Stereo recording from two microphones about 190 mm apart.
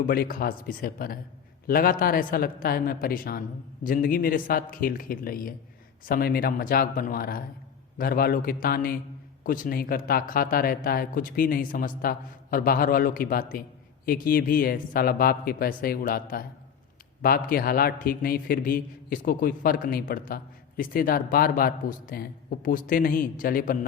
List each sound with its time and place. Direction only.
0.0 s speech: 50° left (ahead or behind)